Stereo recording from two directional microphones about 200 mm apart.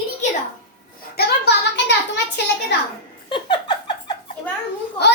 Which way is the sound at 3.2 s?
25° left (ahead or behind).